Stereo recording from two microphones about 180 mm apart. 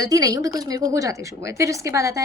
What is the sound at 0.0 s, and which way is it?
A woman's voice, 20° right (ahead or behind).